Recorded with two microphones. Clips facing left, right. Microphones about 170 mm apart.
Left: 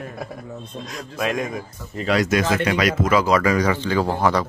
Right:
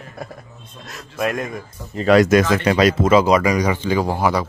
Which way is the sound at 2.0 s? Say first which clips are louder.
Right 7 dB; 55° right (ahead or behind).